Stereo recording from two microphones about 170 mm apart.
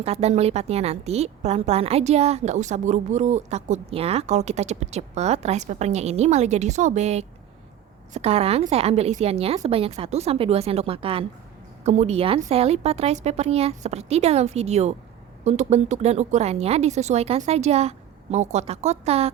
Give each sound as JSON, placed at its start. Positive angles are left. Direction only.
{"t": 0.0, "sound": "a woman's voice", "side_deg": -40}